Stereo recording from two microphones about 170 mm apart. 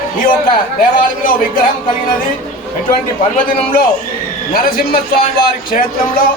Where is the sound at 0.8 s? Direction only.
55° left (ahead or behind).